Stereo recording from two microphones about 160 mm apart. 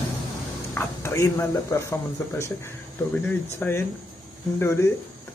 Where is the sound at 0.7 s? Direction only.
15° left (ahead or behind).